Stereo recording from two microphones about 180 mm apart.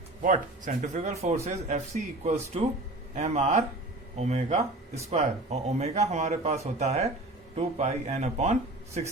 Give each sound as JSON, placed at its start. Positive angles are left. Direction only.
{"t": 0.2, "sound": "speech", "side_deg": -45}